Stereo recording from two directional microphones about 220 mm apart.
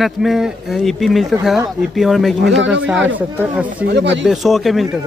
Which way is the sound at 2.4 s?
55° right (ahead or behind).